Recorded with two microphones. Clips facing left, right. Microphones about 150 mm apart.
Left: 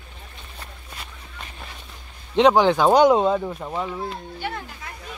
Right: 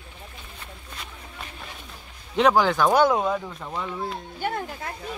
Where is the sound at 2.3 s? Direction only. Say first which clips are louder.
Left 4 dB; 20° left (ahead or behind).